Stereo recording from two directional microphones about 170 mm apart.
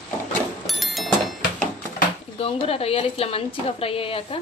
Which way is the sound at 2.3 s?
35° left (ahead or behind).